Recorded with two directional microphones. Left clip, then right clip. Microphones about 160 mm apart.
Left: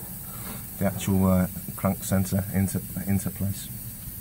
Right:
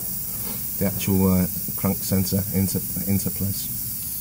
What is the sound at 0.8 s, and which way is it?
Speech, 5° left (ahead or behind).